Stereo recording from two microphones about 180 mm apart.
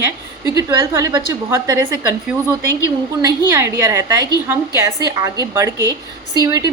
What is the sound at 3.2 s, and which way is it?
A woman's voice, 15° right (ahead or behind).